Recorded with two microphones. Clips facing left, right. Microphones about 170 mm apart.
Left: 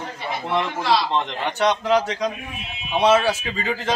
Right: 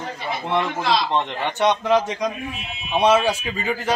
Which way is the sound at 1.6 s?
20° right (ahead or behind).